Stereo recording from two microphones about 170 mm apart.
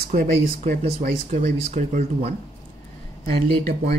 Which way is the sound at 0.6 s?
40° right (ahead or behind).